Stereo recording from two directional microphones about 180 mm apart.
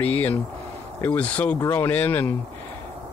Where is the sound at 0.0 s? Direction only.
10° left (ahead or behind).